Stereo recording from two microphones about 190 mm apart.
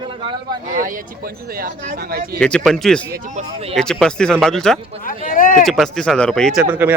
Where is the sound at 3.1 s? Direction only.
40° right (ahead or behind).